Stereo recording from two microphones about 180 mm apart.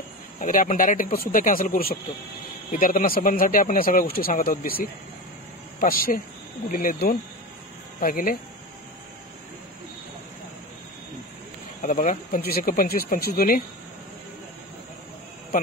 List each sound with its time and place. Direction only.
0.4 s speech: 50° left (ahead or behind)
11.8 s speech: 45° left (ahead or behind)
15.5 s speech: 50° left (ahead or behind)